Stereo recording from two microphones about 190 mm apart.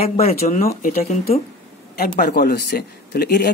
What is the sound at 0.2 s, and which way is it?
Speech, 35° left (ahead or behind).